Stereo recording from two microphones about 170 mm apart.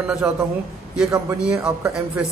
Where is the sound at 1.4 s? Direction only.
5° right (ahead or behind).